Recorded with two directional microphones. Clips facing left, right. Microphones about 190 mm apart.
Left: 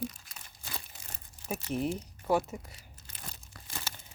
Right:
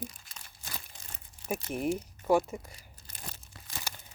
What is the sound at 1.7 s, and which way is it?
Speech, 10° right (ahead or behind).